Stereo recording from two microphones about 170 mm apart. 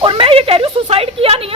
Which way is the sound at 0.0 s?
30° right (ahead or behind).